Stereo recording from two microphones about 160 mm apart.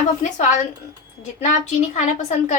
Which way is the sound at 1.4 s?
50° left (ahead or behind).